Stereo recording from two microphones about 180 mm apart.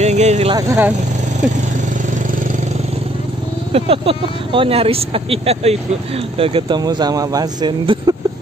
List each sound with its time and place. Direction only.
0.0 s vehicle: 40° right (ahead or behind)
0.6 s speech: 15° right (ahead or behind)
3.7 s speech: 30° right (ahead or behind)